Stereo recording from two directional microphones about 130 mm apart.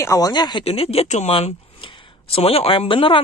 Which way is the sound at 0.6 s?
50° left (ahead or behind).